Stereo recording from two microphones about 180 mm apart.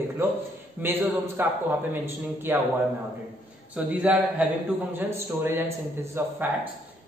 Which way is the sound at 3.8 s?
5° right (ahead or behind).